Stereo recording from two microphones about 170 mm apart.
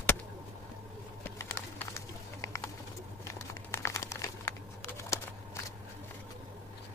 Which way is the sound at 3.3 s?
15° left (ahead or behind).